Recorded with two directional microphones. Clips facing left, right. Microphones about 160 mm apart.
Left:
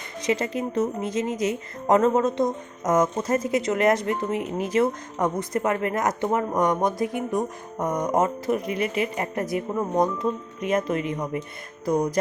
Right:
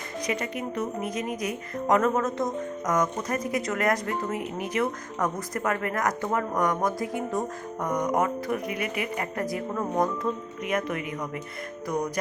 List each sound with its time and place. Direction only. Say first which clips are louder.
0.2 s a woman's voice: left 5 dB; 25° left (ahead or behind)